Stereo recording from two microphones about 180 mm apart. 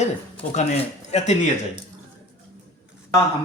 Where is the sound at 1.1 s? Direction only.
40° left (ahead or behind).